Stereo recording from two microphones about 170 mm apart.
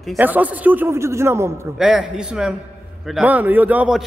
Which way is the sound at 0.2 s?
10° right (ahead or behind).